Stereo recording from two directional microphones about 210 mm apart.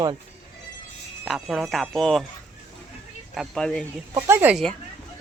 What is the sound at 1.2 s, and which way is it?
Speech, centre (ahead or behind).